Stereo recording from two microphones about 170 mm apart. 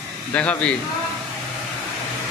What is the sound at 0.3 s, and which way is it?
Speech, 5° left (ahead or behind).